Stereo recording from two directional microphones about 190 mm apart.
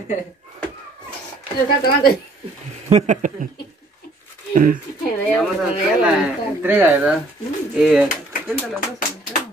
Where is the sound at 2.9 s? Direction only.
35° right (ahead or behind).